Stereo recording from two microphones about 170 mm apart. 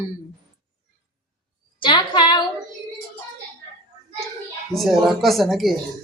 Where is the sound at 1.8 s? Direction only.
25° left (ahead or behind).